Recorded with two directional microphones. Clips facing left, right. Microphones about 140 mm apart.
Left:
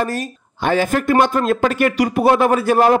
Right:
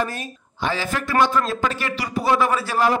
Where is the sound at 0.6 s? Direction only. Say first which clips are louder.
Left 8 dB; 55° left (ahead or behind).